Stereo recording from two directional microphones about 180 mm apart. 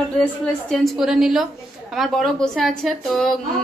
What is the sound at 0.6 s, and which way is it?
A woman's voice, centre (ahead or behind).